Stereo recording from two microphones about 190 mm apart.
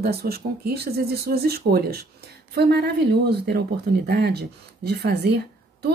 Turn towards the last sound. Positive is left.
turn(degrees=-60)  # may be behind; listen again after turning